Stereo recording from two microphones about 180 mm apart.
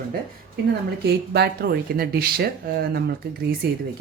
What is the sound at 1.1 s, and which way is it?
Speech, 65° right (ahead or behind).